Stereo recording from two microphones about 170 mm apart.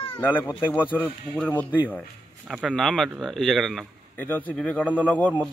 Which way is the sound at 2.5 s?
Centre (ahead or behind).